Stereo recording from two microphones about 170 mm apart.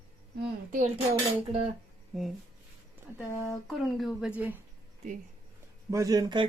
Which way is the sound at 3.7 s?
Centre (ahead or behind).